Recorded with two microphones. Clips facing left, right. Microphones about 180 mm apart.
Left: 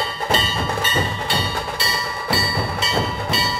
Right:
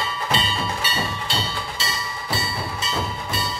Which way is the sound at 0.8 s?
55° left (ahead or behind).